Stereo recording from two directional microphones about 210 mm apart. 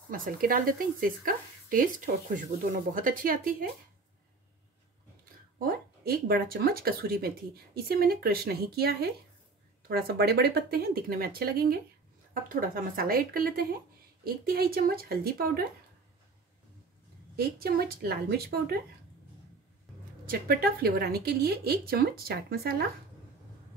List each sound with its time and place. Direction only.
0.1 s speech: 45° right (ahead or behind)
5.6 s speech: 45° right (ahead or behind)
17.4 s speech: 45° right (ahead or behind)
20.2 s speech: 45° right (ahead or behind)